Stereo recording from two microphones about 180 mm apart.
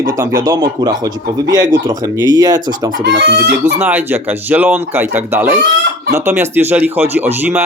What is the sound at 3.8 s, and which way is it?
Speech, 10° right (ahead or behind).